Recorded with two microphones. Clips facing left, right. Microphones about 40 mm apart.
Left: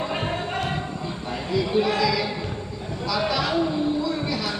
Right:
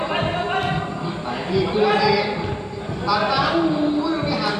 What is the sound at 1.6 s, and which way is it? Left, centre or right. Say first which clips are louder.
Speech: right 5 dB; centre.